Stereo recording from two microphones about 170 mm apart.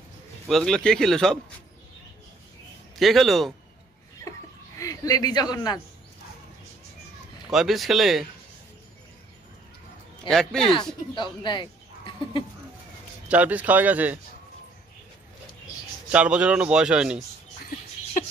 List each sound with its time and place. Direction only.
0.5 s speech: centre (ahead or behind)
3.0 s speech: centre (ahead or behind)
4.7 s a man's voice: 20° left (ahead or behind)
7.5 s speech: centre (ahead or behind)
10.2 s speech: centre (ahead or behind)
11.1 s a sound: 30° left (ahead or behind)
13.3 s speech: 10° right (ahead or behind)
16.1 s speech: 5° right (ahead or behind)
18.2 s a sound: 50° left (ahead or behind)